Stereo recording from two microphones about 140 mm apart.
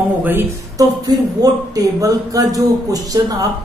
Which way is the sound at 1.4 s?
25° right (ahead or behind).